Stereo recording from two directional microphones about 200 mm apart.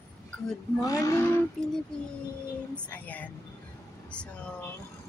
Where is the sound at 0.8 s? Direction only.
15° left (ahead or behind).